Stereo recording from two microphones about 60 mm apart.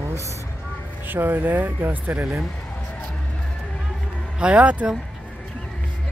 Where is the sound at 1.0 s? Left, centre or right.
Right.